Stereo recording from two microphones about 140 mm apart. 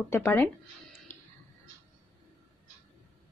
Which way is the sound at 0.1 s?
15° left (ahead or behind).